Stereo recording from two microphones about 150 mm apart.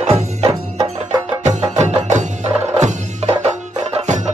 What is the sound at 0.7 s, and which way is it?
Music, 25° right (ahead or behind).